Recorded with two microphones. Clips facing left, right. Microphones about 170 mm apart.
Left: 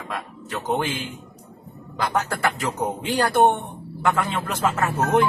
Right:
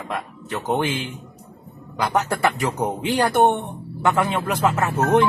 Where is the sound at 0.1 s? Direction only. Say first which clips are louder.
Right 2 dB; 25° right (ahead or behind).